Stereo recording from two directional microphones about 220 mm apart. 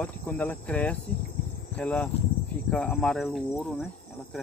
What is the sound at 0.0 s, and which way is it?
Speech, 5° left (ahead or behind).